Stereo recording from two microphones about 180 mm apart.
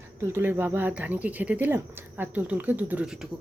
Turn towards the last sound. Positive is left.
turn(degrees=-5)  # may be behind; listen again after turning